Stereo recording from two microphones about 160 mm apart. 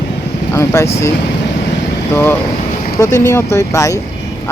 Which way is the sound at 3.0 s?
15° left (ahead or behind).